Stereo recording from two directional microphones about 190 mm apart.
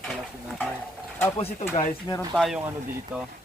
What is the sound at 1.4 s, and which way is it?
Speech, 35° left (ahead or behind).